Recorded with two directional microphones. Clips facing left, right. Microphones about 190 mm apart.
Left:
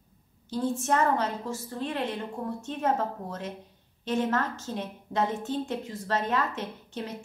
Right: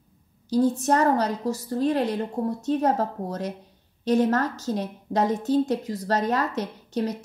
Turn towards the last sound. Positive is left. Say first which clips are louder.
# right 9 dB
turn(degrees=-40)  # may be behind; listen again after turning